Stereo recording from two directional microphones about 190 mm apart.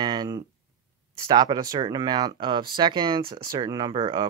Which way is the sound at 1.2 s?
20° right (ahead or behind).